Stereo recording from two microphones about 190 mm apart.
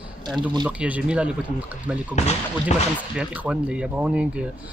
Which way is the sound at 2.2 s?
35° left (ahead or behind).